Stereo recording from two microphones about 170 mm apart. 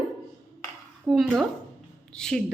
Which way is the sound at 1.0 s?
Centre (ahead or behind).